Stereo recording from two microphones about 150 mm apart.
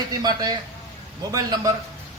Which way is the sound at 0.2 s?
25° right (ahead or behind).